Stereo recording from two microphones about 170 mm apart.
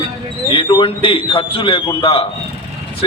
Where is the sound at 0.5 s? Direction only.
30° left (ahead or behind).